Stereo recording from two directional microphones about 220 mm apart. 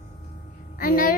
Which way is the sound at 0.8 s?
40° left (ahead or behind).